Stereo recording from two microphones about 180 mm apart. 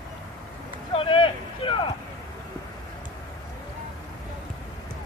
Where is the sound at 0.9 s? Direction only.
30° left (ahead or behind).